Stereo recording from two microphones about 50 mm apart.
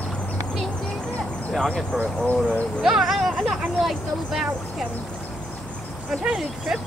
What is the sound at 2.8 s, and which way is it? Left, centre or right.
Speech, centre.